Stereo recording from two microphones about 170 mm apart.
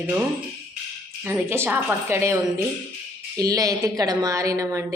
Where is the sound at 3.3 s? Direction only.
20° right (ahead or behind).